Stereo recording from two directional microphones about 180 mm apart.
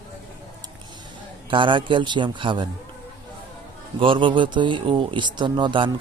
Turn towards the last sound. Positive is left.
turn(degrees=-25)  # may be behind; listen again after turning